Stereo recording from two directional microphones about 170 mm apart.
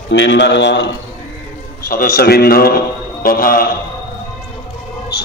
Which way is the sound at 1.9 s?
55° left (ahead or behind).